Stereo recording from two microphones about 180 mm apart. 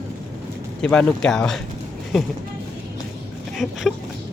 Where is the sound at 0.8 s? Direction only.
5° left (ahead or behind).